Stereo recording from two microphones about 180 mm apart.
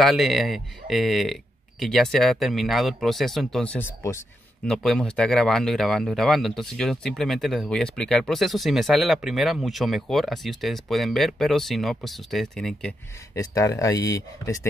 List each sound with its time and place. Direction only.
0.0 s speech: centre (ahead or behind)
4.6 s speech: 5° left (ahead or behind)
13.3 s speech: 15° left (ahead or behind)